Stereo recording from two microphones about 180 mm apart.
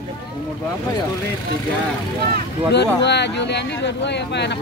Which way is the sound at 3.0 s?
70° left (ahead or behind).